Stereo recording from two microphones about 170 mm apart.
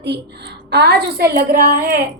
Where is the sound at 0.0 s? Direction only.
80° right.